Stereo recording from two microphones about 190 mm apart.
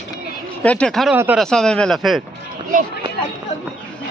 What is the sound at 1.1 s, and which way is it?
Speech, 10° right (ahead or behind).